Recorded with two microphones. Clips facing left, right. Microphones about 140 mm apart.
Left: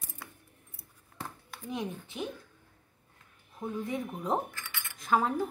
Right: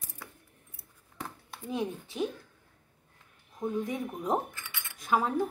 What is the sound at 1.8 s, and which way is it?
Speech, 25° right (ahead or behind).